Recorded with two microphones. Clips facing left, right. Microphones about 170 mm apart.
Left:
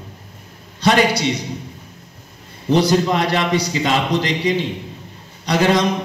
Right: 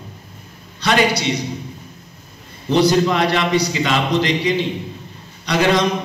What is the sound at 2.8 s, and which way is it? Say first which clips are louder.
A man's voice: right 5 dB; 45° left (ahead or behind).